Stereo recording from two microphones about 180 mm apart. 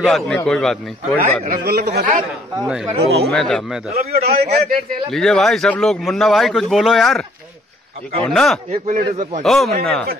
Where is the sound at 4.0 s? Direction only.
55° right (ahead or behind).